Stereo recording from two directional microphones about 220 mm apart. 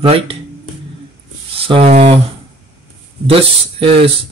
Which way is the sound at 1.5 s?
25° right (ahead or behind).